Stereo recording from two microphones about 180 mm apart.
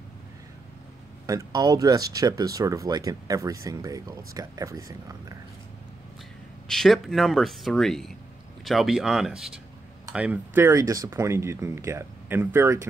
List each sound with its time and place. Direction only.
1.2 s speech: 20° right (ahead or behind)
6.7 s speech: centre (ahead or behind)